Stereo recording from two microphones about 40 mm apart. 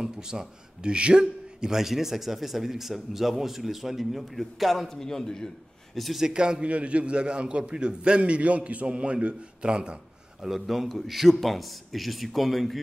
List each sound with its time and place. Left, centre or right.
0.0 s speech: centre
4.8 s a man's voice: centre
6.1 s a man's voice: centre
10.4 s a man's voice: centre